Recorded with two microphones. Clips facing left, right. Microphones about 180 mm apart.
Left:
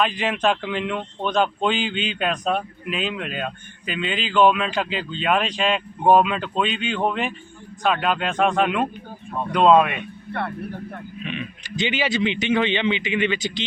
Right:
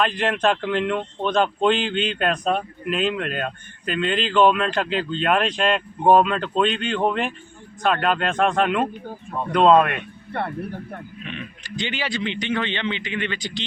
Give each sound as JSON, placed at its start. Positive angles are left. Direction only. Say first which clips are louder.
{"t": 0.0, "sound": "speech", "louder": "right 1 dB", "side_deg": 5}
{"t": 11.3, "sound": "speech", "louder": "left 4 dB", "side_deg": 15}